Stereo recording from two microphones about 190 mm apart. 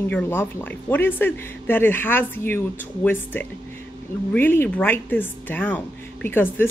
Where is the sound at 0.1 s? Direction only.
10° left (ahead or behind).